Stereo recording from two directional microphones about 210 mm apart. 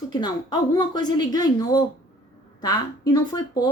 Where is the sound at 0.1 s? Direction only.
20° left (ahead or behind).